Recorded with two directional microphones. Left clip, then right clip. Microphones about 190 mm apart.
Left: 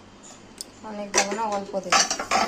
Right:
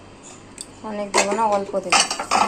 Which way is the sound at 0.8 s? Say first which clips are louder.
Right 4 dB; centre (ahead or behind).